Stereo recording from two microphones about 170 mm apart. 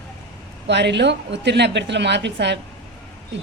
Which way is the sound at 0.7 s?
90° right.